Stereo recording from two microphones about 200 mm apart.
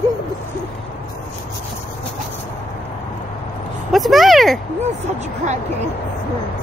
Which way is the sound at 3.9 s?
Centre (ahead or behind).